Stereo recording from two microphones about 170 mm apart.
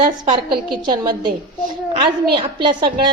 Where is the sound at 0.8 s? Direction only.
25° right (ahead or behind).